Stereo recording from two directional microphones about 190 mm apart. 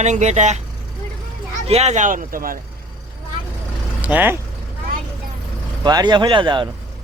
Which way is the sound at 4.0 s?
10° right (ahead or behind).